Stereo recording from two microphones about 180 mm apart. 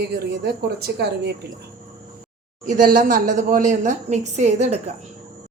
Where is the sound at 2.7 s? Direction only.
50° right (ahead or behind).